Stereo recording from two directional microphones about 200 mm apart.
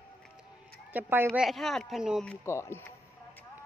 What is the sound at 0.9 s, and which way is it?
A woman's voice, 10° right (ahead or behind).